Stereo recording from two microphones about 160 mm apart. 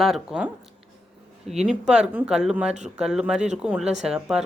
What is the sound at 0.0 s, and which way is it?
Speech, 5° right (ahead or behind).